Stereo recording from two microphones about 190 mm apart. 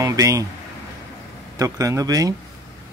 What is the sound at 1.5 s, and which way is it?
Speech, 15° right (ahead or behind).